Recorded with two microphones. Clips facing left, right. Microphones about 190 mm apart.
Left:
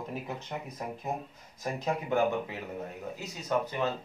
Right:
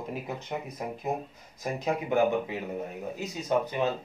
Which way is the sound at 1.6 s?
15° right (ahead or behind).